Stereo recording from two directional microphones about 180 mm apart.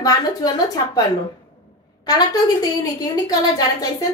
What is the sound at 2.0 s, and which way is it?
A woman's voice, 20° left (ahead or behind).